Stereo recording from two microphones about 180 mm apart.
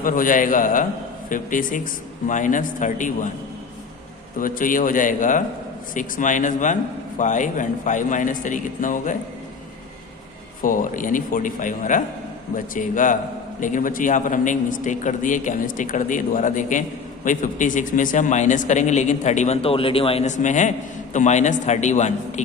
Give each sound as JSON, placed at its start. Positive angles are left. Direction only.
{"t": 0.0, "sound": "a man's voice", "side_deg": 50}
{"t": 4.4, "sound": "a man's voice", "side_deg": 50}
{"t": 10.6, "sound": "a man's voice", "side_deg": 45}